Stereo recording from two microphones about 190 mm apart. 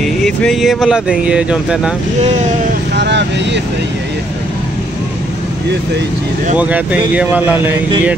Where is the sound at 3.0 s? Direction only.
65° right (ahead or behind).